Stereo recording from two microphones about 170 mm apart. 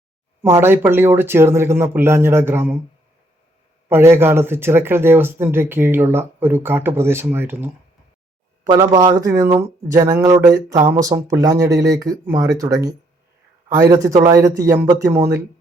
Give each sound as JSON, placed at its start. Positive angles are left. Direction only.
{"t": 0.4, "sound": "speech", "side_deg": -15}
{"t": 3.8, "sound": "speech", "side_deg": -15}